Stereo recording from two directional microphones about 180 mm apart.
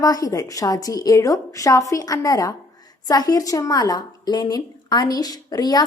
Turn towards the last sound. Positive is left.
turn(degrees=20)  # may be behind; listen again after turning